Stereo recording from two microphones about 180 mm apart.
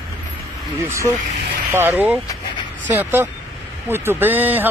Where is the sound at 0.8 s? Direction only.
15° right (ahead or behind).